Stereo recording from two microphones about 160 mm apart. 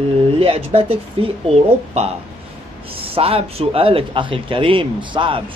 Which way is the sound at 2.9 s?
35° right (ahead or behind).